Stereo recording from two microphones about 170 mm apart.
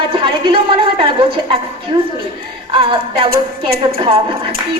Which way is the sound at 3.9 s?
35° right (ahead or behind).